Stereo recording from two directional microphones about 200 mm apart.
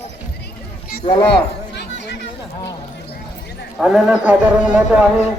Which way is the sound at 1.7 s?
55° left (ahead or behind).